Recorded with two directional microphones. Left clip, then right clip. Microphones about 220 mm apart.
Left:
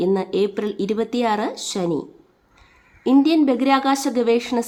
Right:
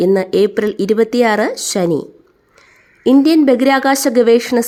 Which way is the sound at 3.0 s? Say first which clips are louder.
Right 6 dB; 25° right (ahead or behind).